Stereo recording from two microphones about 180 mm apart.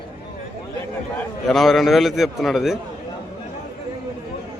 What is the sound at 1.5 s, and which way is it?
A man's voice, centre (ahead or behind).